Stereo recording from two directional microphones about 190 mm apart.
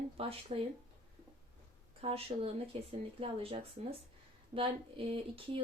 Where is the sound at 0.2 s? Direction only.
30° right (ahead or behind).